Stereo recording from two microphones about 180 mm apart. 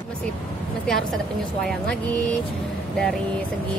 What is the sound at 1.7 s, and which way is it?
Speech, 5° left (ahead or behind).